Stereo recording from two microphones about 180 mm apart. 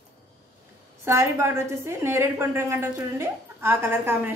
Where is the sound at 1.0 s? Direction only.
15° right (ahead or behind).